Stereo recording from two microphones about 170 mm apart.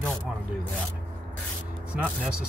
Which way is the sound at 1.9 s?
5° right (ahead or behind).